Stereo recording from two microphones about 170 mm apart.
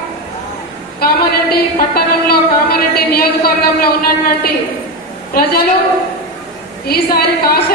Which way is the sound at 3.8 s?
65° left (ahead or behind).